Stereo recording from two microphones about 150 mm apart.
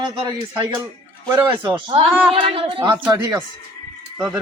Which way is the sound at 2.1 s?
5° right (ahead or behind).